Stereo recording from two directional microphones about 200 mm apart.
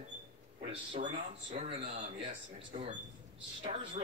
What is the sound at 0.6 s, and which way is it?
Speech, 25° right (ahead or behind).